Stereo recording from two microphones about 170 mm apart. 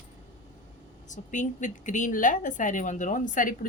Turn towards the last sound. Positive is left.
turn(degrees=50)  # may be behind; listen again after turning